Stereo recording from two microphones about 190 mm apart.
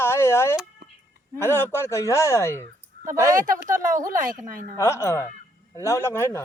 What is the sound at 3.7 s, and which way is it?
Speech, 45° right (ahead or behind).